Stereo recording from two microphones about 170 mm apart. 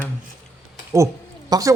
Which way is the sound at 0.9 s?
20° right (ahead or behind).